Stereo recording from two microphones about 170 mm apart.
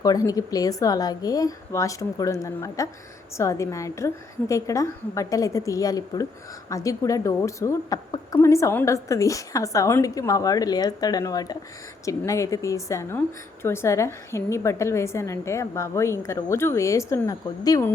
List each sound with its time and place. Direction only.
0.0 s a woman's voice: 20° left (ahead or behind)